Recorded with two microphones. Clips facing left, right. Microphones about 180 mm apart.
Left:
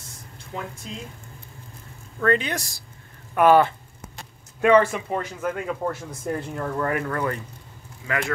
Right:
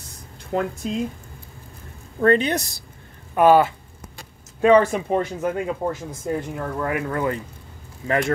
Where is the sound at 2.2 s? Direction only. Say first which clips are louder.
Right 5 dB; 35° right (ahead or behind).